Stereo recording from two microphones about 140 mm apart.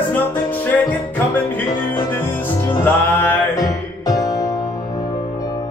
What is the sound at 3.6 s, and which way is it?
Music, 25° left (ahead or behind).